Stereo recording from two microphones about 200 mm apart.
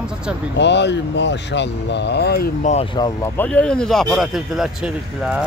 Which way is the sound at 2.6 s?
35° left (ahead or behind).